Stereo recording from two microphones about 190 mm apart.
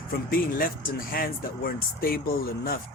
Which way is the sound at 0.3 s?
50° left (ahead or behind).